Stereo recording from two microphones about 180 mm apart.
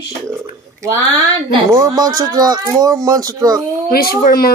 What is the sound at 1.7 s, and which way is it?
Speech, 20° right (ahead or behind).